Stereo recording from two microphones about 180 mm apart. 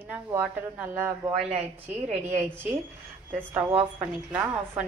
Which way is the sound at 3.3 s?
10° right (ahead or behind).